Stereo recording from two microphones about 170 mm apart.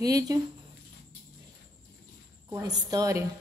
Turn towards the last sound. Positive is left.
turn(degrees=-20)  # may be behind; listen again after turning